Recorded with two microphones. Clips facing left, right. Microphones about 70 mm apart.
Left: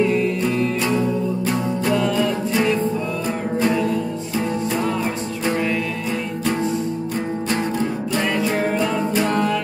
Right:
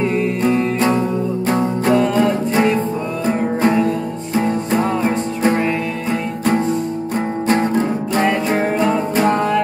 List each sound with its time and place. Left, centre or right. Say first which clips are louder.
0.0 s music: right 2 dB; right